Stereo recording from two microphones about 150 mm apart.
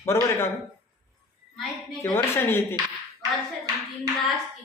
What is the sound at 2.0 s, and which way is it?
Speech, 20° left (ahead or behind).